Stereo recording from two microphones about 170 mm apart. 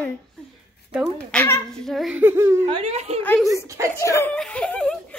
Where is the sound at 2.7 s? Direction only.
40° right (ahead or behind).